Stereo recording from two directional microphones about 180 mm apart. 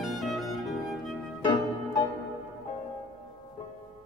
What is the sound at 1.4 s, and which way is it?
Music, 25° left (ahead or behind).